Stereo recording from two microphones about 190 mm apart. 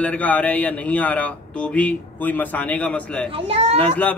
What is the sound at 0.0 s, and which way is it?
A man's voice, 5° left (ahead or behind).